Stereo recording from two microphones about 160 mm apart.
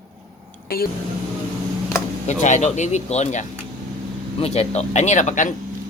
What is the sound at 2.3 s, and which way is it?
Speech, 50° left (ahead or behind).